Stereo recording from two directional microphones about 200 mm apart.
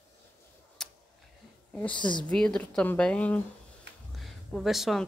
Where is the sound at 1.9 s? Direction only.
25° left (ahead or behind).